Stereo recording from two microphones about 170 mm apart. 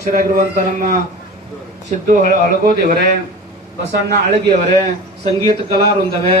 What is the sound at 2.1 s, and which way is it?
A man's voice, 50° right (ahead or behind).